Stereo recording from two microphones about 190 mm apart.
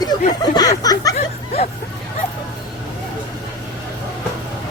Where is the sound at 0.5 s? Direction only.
20° left (ahead or behind).